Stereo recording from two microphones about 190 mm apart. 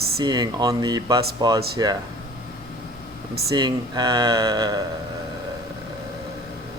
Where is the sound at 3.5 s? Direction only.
20° right (ahead or behind).